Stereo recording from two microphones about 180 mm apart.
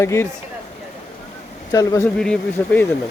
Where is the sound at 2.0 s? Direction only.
5° left (ahead or behind).